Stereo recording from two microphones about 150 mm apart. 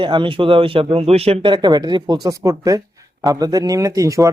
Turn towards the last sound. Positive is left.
turn(degrees=-20)  # may be behind; listen again after turning